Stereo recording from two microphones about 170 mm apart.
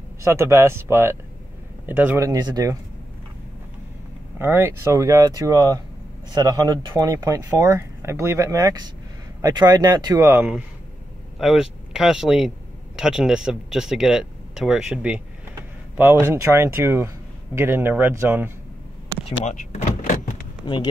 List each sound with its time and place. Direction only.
0.2 s speech: 15° right (ahead or behind)
2.2 s speech: 20° right (ahead or behind)
4.4 s speech: 15° right (ahead or behind)
19.4 s power windows: 45° left (ahead or behind)
20.7 s speech: 30° left (ahead or behind)